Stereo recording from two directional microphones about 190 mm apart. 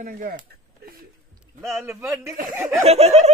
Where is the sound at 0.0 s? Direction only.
50° right (ahead or behind).